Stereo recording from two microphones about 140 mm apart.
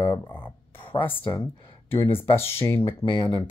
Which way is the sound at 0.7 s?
40° left (ahead or behind).